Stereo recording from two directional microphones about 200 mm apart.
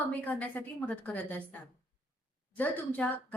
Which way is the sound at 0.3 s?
10° left (ahead or behind).